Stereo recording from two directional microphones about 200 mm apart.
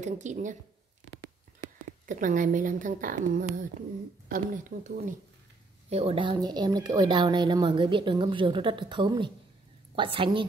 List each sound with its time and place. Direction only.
0.0 s speech: 35° right (ahead or behind)
1.9 s speech: 40° right (ahead or behind)
5.9 s speech: 30° right (ahead or behind)